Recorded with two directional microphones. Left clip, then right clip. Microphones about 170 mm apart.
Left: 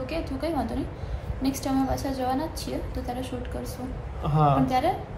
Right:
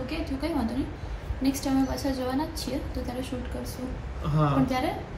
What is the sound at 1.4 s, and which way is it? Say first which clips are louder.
A woman's voice: even; centre (ahead or behind).